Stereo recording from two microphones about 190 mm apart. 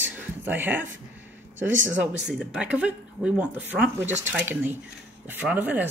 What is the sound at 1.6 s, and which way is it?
Speech, 80° right.